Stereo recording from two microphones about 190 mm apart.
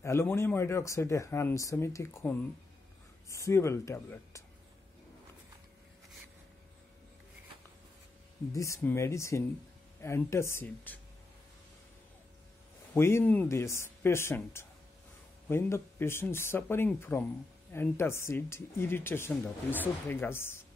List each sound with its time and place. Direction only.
0.0 s speech: 15° left (ahead or behind)
8.5 s speech: 15° left (ahead or behind)
12.9 s speech: 10° left (ahead or behind)